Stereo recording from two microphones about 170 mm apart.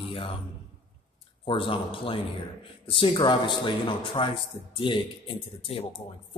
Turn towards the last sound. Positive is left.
turn(degrees=35)  # may be behind; listen again after turning